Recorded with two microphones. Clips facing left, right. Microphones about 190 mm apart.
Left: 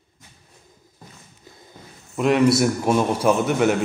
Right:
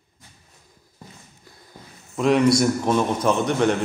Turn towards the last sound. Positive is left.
turn(degrees=5)  # may be behind; listen again after turning